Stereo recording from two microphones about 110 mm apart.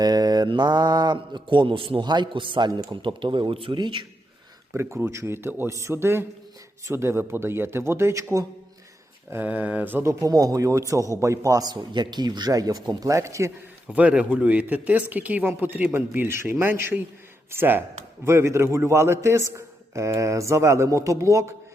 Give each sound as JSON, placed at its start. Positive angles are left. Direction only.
{"t": 0.0, "sound": "speech", "side_deg": -40}
{"t": 4.7, "sound": "speech", "side_deg": -25}
{"t": 9.3, "sound": "speech", "side_deg": -15}
{"t": 10.1, "sound": "a man's voice", "side_deg": -30}
{"t": 13.8, "sound": "speech", "side_deg": -10}